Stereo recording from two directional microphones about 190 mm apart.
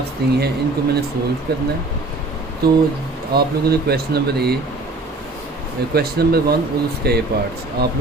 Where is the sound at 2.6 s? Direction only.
55° right (ahead or behind).